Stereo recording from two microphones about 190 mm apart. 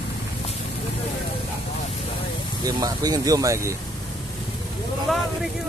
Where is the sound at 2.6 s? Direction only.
20° right (ahead or behind).